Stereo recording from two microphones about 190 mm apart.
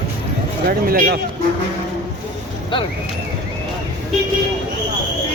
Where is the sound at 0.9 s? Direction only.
50° right (ahead or behind).